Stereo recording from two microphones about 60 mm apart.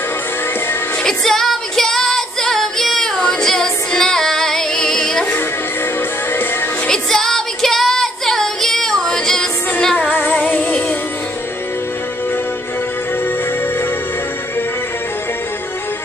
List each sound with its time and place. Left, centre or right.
1.0 s female singing: centre
6.9 s music: centre
10.1 s music: left